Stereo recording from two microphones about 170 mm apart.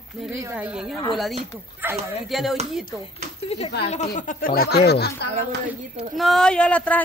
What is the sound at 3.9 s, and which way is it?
Speech, 45° left (ahead or behind).